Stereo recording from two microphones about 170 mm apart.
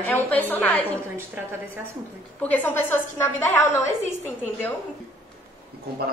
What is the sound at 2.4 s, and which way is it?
A woman's voice, 10° left (ahead or behind).